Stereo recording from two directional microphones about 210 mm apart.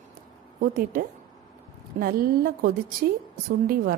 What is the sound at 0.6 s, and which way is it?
A woman's voice, 45° right (ahead or behind).